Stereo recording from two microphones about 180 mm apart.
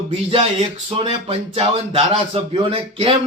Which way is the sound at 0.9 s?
30° right (ahead or behind).